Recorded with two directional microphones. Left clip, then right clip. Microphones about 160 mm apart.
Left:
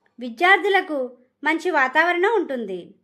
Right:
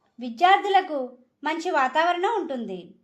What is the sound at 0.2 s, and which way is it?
A woman's voice, 35° left (ahead or behind).